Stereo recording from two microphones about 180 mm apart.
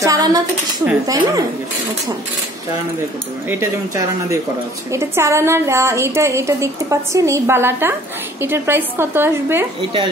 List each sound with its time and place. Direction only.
0.0 s a woman's voice: 20° right (ahead or behind)
3.4 s a woman's voice: 15° right (ahead or behind)